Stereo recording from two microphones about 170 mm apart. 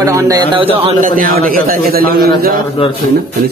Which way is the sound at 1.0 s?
55° right (ahead or behind).